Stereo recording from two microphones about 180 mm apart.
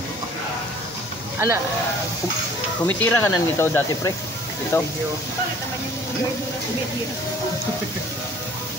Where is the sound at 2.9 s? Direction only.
10° left (ahead or behind).